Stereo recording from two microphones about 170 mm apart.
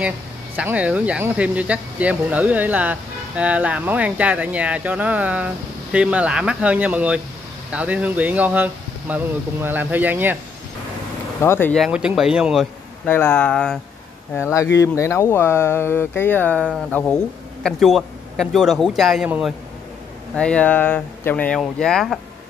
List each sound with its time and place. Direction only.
0.6 s speech: 10° right (ahead or behind)
11.4 s speech: 15° left (ahead or behind)
11.7 s speech: 5° right (ahead or behind)
13.0 s speech: 10° left (ahead or behind)
14.3 s speech: 15° left (ahead or behind)
17.6 s speech: centre (ahead or behind)
20.3 s speech: 5° left (ahead or behind)